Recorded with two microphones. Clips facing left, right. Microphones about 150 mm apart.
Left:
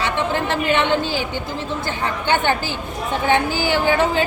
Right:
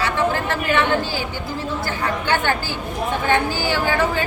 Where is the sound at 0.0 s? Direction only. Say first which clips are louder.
Even; 20° left (ahead or behind).